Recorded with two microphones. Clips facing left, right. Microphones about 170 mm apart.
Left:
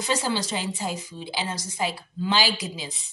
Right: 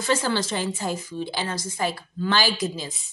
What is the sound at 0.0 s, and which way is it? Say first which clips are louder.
A woman's voice: right 2 dB; 15° left (ahead or behind).